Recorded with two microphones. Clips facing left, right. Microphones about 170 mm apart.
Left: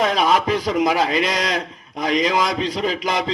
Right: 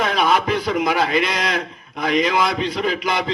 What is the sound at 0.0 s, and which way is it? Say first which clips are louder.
A man's voice: left 1 dB; 35° left (ahead or behind).